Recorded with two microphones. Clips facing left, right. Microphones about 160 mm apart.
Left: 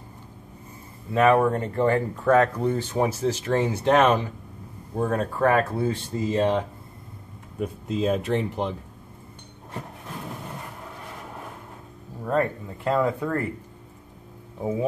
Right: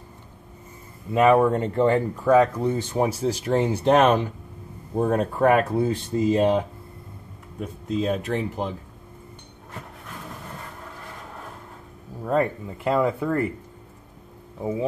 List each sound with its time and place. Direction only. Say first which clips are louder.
1.1 s speech: right 2 dB; 15° right (ahead or behind)
2.6 s speech: right 1 dB; 10° right (ahead or behind)
7.5 s speech: right 1 dB; 5° left (ahead or behind)
12.3 s speech: right 1 dB; 10° right (ahead or behind)
14.6 s speech: even; centre (ahead or behind)